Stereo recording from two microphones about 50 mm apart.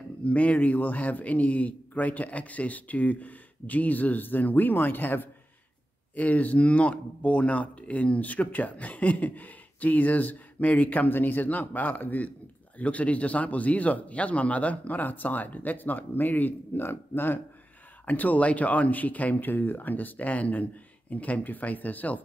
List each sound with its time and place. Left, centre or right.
0.2 s speech: left